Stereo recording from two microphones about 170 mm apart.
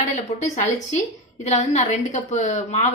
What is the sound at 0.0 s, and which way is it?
A woman's voice, 45° left (ahead or behind).